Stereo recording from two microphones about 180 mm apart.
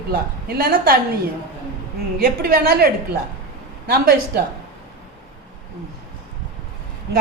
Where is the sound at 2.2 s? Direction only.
55° right (ahead or behind).